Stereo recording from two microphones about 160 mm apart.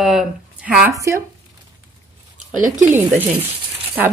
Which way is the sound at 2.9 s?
10° right (ahead or behind).